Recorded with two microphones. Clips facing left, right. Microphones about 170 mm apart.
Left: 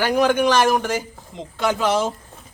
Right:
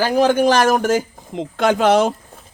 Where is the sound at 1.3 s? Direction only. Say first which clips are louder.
Right 5 dB; 60° right (ahead or behind).